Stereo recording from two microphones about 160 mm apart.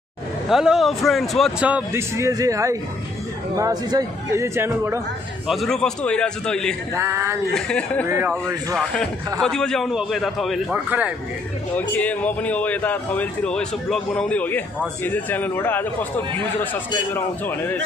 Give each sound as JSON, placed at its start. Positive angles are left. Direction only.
{"t": 0.5, "sound": "speech", "side_deg": 0}
{"t": 5.5, "sound": "a man's voice", "side_deg": 0}
{"t": 6.9, "sound": "speech", "side_deg": -20}
{"t": 7.5, "sound": "a man's voice", "side_deg": 5}
{"t": 8.1, "sound": "speech", "side_deg": -15}
{"t": 9.4, "sound": "a man's voice", "side_deg": 5}
{"t": 11.7, "sound": "speech", "side_deg": 10}
{"t": 17.1, "sound": "speech", "side_deg": 10}